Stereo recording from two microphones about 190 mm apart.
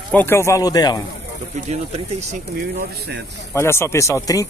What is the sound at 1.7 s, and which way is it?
Speech, 35° right (ahead or behind).